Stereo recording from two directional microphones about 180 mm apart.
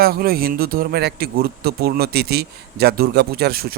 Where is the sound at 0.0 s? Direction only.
60° right (ahead or behind).